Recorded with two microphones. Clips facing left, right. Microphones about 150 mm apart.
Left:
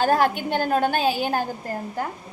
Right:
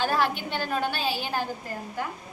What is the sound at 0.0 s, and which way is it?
A woman's voice, 45° left (ahead or behind).